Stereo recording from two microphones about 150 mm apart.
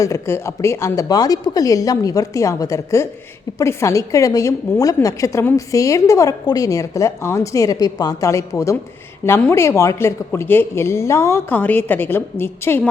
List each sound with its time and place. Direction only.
0.0 s a woman's voice: 20° left (ahead or behind)